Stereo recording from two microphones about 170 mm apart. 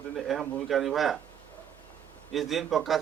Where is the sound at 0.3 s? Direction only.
Centre (ahead or behind).